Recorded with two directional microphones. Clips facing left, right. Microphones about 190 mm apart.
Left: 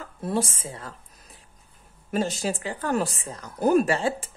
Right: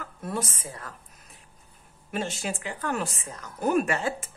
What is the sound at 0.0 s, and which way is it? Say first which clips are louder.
Speech: left 5 dB; 30° left (ahead or behind).